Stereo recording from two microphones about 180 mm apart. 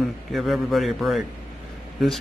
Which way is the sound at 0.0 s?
Centre (ahead or behind).